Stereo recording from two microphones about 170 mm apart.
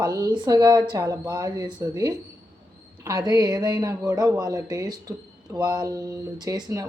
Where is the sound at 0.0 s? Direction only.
20° right (ahead or behind).